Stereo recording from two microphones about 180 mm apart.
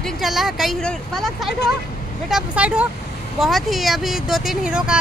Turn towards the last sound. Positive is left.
turn(degrees=-5)  # may be behind; listen again after turning